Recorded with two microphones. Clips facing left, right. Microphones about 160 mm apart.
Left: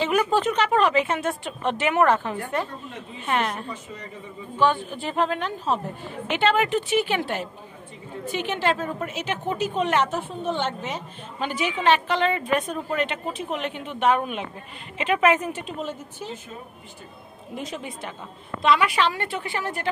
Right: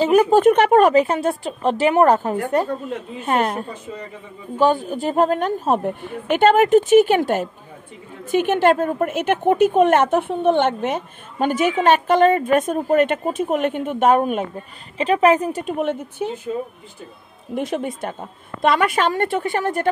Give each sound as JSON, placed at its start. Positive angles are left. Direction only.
{"t": 0.0, "sound": "a woman's voice", "side_deg": -40}
{"t": 15.0, "sound": "a woman's voice", "side_deg": -35}
{"t": 15.6, "sound": "a woman's voice", "side_deg": -60}
{"t": 17.6, "sound": "a woman's voice", "side_deg": -55}